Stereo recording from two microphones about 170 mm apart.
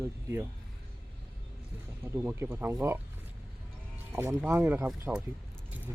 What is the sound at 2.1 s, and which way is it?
Speech, 15° right (ahead or behind).